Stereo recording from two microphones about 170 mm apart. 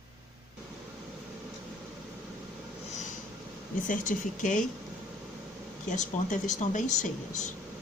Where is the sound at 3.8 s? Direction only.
50° left (ahead or behind).